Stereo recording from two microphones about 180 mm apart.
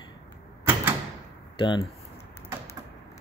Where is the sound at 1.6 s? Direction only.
25° left (ahead or behind).